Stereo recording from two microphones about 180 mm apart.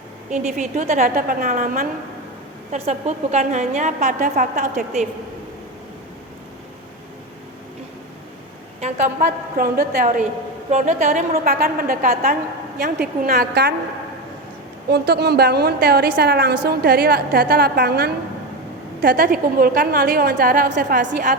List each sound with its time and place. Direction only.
0.3 s a woman's voice: 45° right (ahead or behind)
2.7 s a woman's voice: 40° right (ahead or behind)
9.6 s a woman's voice: 60° right (ahead or behind)
10.7 s a woman's voice: 40° right (ahead or behind); by 13.7 s 60° right (ahead or behind)
14.8 s a woman's voice: 60° right (ahead or behind)